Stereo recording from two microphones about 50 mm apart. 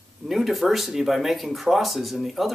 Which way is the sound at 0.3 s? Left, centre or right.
Centre.